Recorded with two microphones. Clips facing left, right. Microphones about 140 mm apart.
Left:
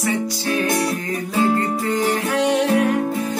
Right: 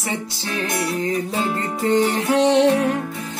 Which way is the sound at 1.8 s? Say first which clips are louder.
Right 2 dB; 25° right (ahead or behind).